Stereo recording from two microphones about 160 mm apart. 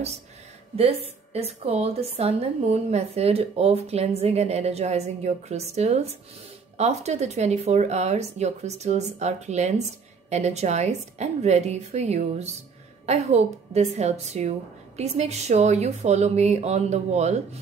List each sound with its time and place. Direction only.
1.0 s a woman's voice: 40° right (ahead or behind)